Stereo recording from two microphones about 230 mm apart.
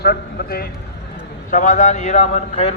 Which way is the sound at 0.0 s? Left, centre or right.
Left.